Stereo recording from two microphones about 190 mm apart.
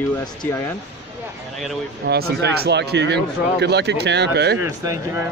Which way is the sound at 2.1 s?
55° right (ahead or behind).